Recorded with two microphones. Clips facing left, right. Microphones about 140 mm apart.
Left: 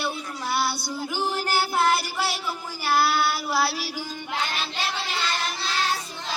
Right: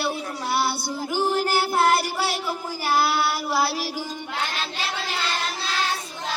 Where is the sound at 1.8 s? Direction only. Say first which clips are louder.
Right 3 dB; 55° right (ahead or behind).